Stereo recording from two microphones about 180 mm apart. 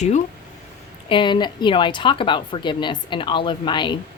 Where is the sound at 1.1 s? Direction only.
25° left (ahead or behind).